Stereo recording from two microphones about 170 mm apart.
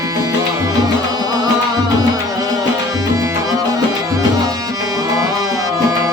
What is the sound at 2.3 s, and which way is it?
Tabla, 20° right (ahead or behind).